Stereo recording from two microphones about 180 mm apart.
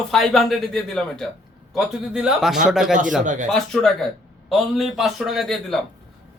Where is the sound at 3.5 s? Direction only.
Centre (ahead or behind).